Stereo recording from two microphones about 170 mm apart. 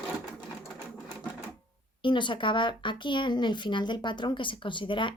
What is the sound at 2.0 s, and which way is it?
Speech, 30° left (ahead or behind).